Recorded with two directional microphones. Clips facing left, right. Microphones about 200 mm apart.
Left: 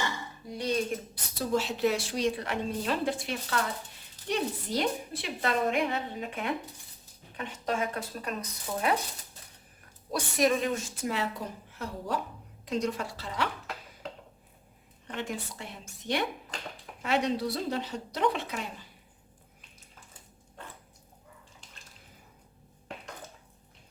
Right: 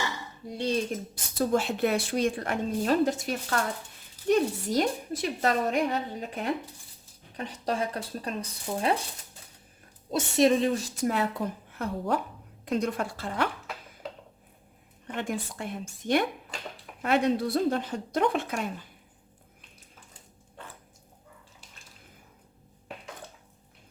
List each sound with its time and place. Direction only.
1.1 s a woman's voice: 50° right (ahead or behind); by 9.0 s 30° right (ahead or behind)
10.1 s a woman's voice: 25° right (ahead or behind)
11.0 s a woman's voice: 55° right (ahead or behind)
15.1 s a woman's voice: 50° right (ahead or behind)